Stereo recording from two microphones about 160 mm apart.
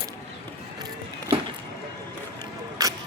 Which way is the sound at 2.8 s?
20° right (ahead or behind).